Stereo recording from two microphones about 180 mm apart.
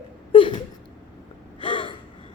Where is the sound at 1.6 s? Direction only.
30° left (ahead or behind).